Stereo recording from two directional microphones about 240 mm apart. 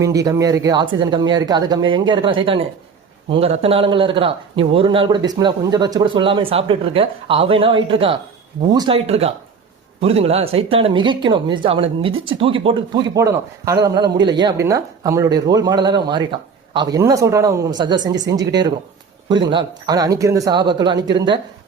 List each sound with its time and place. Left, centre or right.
0.0 s a man's voice: centre